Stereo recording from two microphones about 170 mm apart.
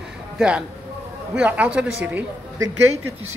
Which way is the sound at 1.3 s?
10° right (ahead or behind).